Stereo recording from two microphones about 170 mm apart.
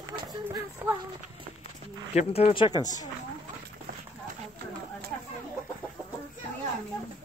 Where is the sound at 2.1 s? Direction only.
35° left (ahead or behind).